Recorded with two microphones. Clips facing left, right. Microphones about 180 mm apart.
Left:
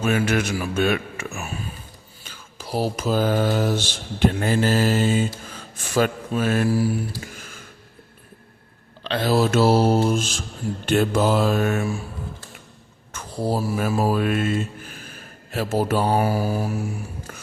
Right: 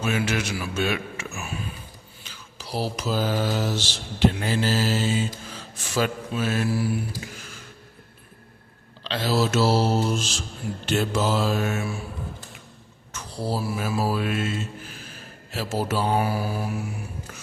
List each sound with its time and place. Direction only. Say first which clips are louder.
0.0 s mantra: left 4 dB; 55° left (ahead or behind)
1.4 s a sound: right 1 dB; 40° left (ahead or behind)
2.2 s mantra: left 4 dB; 50° left (ahead or behind)
7.3 s a sound: left 1 dB; 50° left (ahead or behind)
9.0 s mantra: left 4 dB; 55° left (ahead or behind)
13.1 s mantra: left 4 dB; 50° left (ahead or behind)